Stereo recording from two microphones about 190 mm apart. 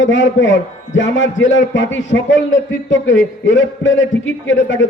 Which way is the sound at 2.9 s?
75° left (ahead or behind).